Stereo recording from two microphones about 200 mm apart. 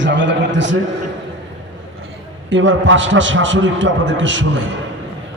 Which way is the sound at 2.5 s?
70° right (ahead or behind).